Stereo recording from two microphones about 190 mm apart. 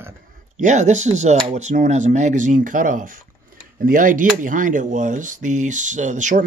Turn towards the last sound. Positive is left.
turn(degrees=-40)  # may be behind; listen again after turning